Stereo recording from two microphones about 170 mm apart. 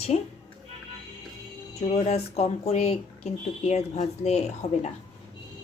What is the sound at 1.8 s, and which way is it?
Speech, 40° left (ahead or behind).